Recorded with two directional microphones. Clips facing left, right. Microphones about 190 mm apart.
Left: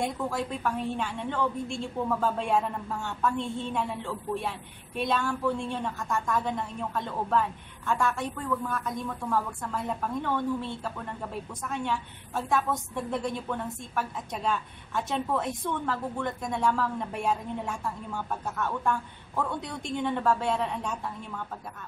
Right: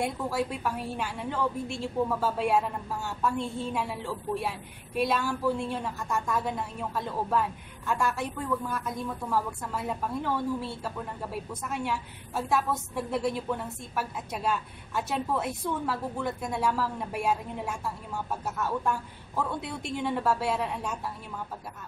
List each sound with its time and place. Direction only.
0.0 s a woman's voice: 5° right (ahead or behind)